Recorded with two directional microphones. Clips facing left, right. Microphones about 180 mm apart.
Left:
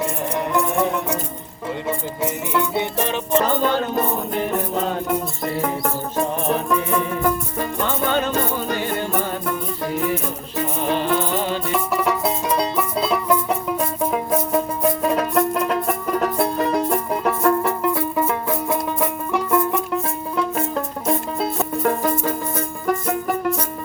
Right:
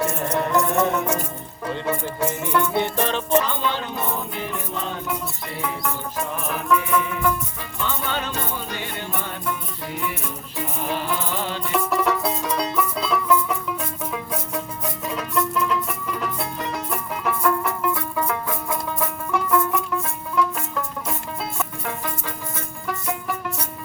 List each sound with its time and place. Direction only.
0.0 s music: 15° left (ahead or behind)
1.9 s music: 15° left (ahead or behind)
3.4 s music: 45° left (ahead or behind)
11.1 s rattle: 50° left (ahead or behind)
11.9 s music: 10° left (ahead or behind)
12.2 s music: 30° left (ahead or behind)
13.7 s music: 45° left (ahead or behind); by 19.8 s 25° left (ahead or behind)
20.3 s music: 40° left (ahead or behind)